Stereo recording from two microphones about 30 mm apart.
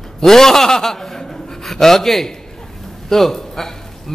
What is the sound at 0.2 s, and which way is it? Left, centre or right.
A man's voice, centre.